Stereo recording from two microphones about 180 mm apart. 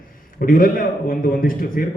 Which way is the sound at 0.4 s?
50° left (ahead or behind).